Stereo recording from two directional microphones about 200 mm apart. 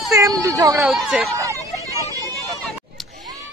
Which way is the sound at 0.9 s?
Centre (ahead or behind).